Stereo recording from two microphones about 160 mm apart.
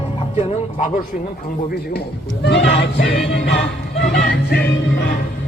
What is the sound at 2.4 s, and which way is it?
Speech, 90° left.